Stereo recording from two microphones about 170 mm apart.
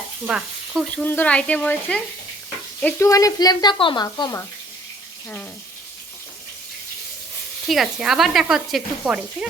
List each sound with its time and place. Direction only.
0.3 s speech: 5° right (ahead or behind)
0.9 s speech: 10° left (ahead or behind)
7.7 s speech: centre (ahead or behind)